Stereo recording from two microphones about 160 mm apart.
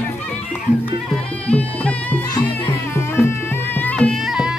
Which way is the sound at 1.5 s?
10° left (ahead or behind).